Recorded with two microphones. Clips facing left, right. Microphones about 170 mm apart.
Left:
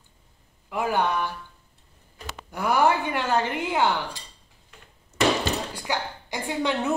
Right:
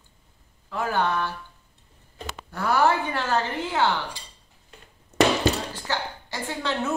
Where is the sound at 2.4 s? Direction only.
15° left (ahead or behind).